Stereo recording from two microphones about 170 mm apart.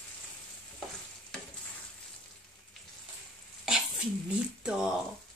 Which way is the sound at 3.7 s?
5° right (ahead or behind).